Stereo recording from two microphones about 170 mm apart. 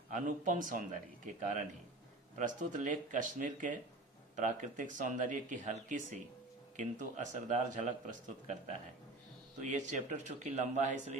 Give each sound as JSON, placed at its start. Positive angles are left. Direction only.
{"t": 0.1, "sound": "speech", "side_deg": -50}
{"t": 9.6, "sound": "speech", "side_deg": -45}